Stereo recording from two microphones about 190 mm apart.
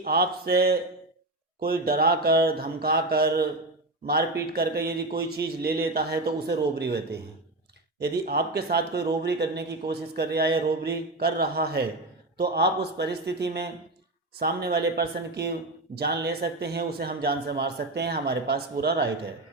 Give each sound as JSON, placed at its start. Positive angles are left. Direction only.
{"t": 0.0, "sound": "speech", "side_deg": -55}